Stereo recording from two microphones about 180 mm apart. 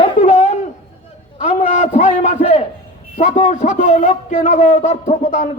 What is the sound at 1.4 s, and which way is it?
A man's voice, 40° left (ahead or behind).